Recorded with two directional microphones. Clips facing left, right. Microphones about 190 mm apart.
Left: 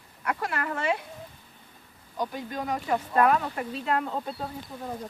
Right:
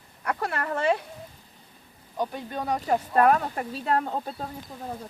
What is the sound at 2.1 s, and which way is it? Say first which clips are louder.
Speech: right 1 dB; 30° right (ahead or behind).